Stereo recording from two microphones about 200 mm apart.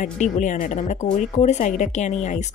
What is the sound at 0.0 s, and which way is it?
Speech, 40° left (ahead or behind).